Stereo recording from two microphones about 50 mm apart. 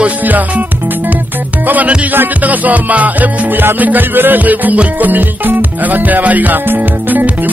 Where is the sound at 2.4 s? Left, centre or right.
Right.